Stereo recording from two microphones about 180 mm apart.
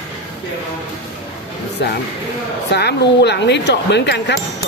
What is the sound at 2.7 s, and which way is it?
Speech, 70° left (ahead or behind).